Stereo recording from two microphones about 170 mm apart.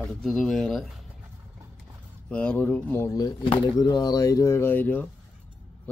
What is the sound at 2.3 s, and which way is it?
Speech, 5° left (ahead or behind).